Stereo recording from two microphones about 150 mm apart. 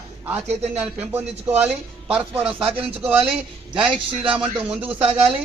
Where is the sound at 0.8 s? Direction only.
10° right (ahead or behind).